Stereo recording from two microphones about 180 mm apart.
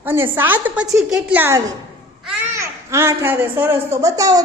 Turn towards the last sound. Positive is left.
turn(degrees=-20)  # may be behind; listen again after turning